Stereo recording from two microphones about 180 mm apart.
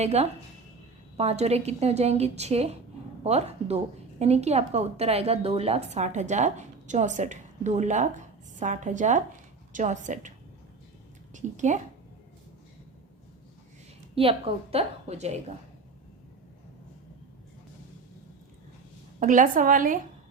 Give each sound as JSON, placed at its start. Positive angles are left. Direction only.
{"t": 0.0, "sound": "a woman's voice", "side_deg": -35}
{"t": 11.3, "sound": "a woman's voice", "side_deg": -40}
{"t": 14.2, "sound": "a woman's voice", "side_deg": -30}
{"t": 19.2, "sound": "a woman's voice", "side_deg": -45}